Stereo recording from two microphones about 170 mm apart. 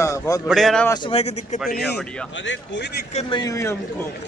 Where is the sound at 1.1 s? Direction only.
35° left (ahead or behind).